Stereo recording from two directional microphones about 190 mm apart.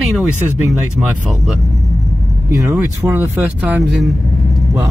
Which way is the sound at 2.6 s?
15° right (ahead or behind).